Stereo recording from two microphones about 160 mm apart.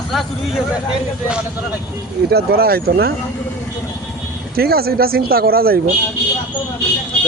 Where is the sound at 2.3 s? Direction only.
75° right (ahead or behind).